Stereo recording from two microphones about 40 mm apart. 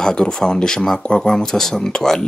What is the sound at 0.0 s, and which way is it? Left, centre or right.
Speech, centre.